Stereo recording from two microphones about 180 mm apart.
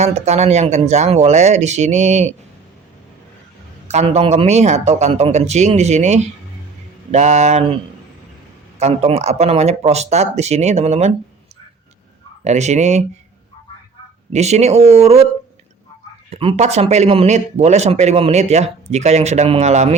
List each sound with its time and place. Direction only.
0.0 s speech: 35° right (ahead or behind)
3.8 s speech: 35° right (ahead or behind)
8.8 s speech: 35° right (ahead or behind)
12.5 s speech: 40° right (ahead or behind)
14.3 s speech: 40° right (ahead or behind)
16.3 s speech: 35° right (ahead or behind)